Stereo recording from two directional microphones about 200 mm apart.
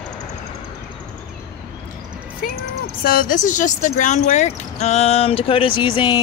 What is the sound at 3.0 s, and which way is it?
Speech, 45° left (ahead or behind).